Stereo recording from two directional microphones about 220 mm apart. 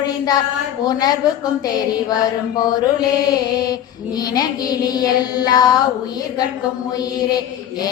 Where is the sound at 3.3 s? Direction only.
15° left (ahead or behind).